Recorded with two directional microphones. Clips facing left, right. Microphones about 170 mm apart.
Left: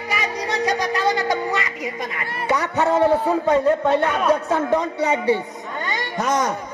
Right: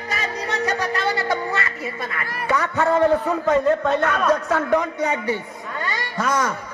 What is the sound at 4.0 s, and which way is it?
Speech, 20° left (ahead or behind).